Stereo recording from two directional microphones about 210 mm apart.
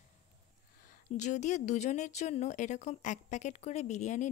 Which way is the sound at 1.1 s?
35° left (ahead or behind).